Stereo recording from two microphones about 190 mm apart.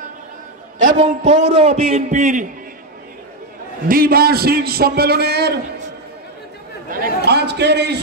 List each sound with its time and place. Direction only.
0.9 s a man's voice: 40° right (ahead or behind)
3.9 s a man's voice: 50° right (ahead or behind)
6.9 s a man's voice: 55° right (ahead or behind)